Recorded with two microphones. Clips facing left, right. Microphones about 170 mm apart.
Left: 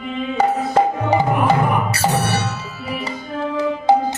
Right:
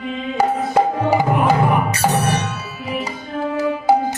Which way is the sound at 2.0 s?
15° right (ahead or behind).